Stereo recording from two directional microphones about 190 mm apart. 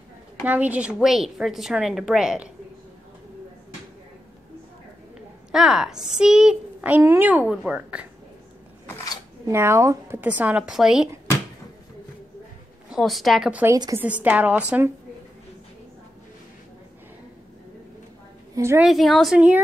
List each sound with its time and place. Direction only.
0.4 s a woman's voice: 10° right (ahead or behind)
5.5 s a woman's voice: 5° right (ahead or behind)
8.8 s a sound: 15° left (ahead or behind)
9.5 s a woman's voice: 15° right (ahead or behind)
12.9 s a woman's voice: centre (ahead or behind)
13.7 s a woman's voice: 20° right (ahead or behind)
14.0 s a woman's voice: 5° right (ahead or behind)
18.5 s a woman's voice: 15° right (ahead or behind)
18.9 s a woman's voice: centre (ahead or behind)